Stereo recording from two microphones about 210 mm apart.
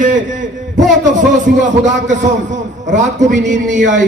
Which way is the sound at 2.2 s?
35° right (ahead or behind).